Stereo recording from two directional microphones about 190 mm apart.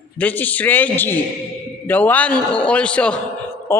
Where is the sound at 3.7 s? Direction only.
15° left (ahead or behind).